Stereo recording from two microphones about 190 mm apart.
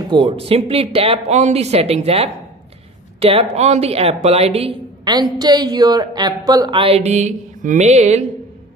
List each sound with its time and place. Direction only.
0.1 s speech: 30° right (ahead or behind)